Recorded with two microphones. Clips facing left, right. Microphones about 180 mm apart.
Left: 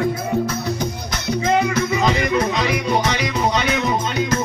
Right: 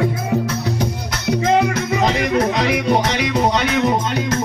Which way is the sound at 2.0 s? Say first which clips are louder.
Right 4 dB; 70° right (ahead or behind).